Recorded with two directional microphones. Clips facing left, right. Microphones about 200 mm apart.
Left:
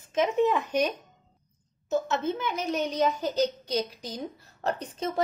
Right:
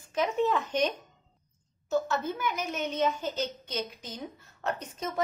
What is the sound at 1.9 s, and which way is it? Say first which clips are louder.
A woman's voice: left 2 dB; 20° left (ahead or behind).